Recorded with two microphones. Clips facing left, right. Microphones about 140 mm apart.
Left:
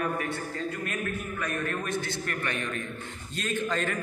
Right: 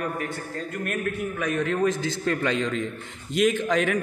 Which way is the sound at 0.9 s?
90° right.